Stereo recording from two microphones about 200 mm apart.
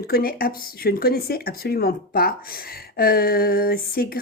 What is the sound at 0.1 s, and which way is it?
Speech, 50° left (ahead or behind).